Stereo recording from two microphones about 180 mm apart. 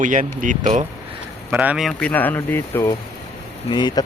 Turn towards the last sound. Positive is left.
turn(degrees=25)  # may be behind; listen again after turning